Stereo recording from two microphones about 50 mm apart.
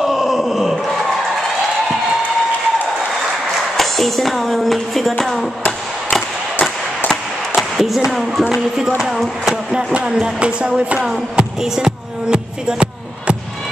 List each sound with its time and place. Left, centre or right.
0.0 s groan: centre
3.7 s speech: centre
7.5 s a sound: centre
8.1 s speech: centre
9.9 s music: centre
11.0 s speech: centre